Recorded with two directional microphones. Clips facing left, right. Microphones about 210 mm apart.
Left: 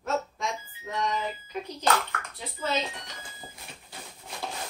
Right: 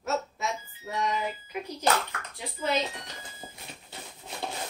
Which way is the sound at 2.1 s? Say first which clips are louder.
Left 1 dB; 15° right (ahead or behind).